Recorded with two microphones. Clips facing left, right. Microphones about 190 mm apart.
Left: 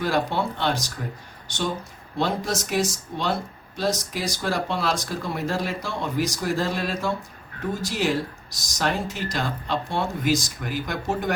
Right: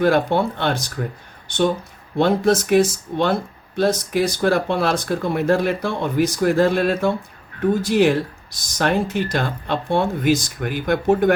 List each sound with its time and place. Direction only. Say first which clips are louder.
0.0 s speech: right 7 dB; 55° right (ahead or behind)
2.1 s speech: right 9 dB; 55° right (ahead or behind)